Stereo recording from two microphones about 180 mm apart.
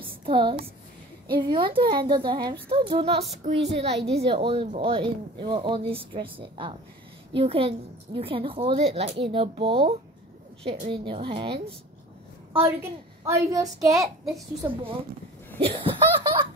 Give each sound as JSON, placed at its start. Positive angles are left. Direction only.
{"t": 0.3, "sound": "a woman's voice", "side_deg": -25}
{"t": 13.2, "sound": "speech", "side_deg": -20}
{"t": 15.6, "sound": "snicker", "side_deg": -30}